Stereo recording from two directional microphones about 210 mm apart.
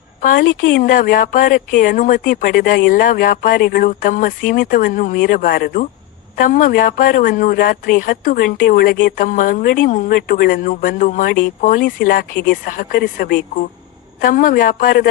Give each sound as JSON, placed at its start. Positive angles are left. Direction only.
{"t": 0.2, "sound": "a woman's voice", "side_deg": 40}